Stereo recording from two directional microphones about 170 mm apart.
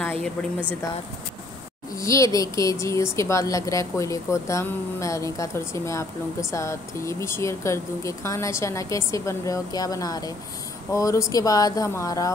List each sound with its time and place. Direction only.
0.0 s speech: 5° left (ahead or behind)
2.0 s speech: 20° left (ahead or behind)